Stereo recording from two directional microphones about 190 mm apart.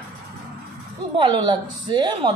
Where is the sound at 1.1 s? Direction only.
25° right (ahead or behind).